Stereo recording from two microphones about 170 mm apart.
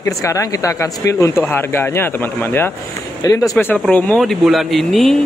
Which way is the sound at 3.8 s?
5° left (ahead or behind).